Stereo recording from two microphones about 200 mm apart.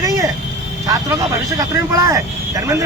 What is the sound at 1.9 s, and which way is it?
Speech, 15° right (ahead or behind).